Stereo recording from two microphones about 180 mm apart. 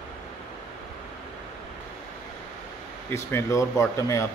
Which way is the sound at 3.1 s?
15° left (ahead or behind).